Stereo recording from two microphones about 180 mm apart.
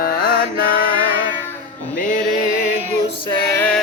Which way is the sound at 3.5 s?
5° left (ahead or behind).